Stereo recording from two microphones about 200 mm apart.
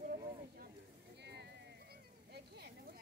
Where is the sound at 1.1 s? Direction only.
55° right (ahead or behind).